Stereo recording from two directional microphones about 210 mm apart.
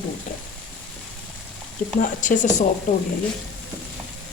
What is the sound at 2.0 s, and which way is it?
Speech, 40° left (ahead or behind).